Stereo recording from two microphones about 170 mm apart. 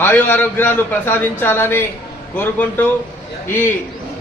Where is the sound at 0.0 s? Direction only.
10° left (ahead or behind).